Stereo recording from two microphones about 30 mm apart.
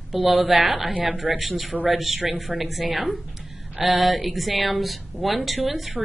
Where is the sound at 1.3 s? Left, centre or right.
Right.